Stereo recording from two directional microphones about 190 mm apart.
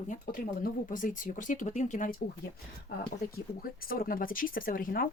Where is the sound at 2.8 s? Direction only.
50° left (ahead or behind).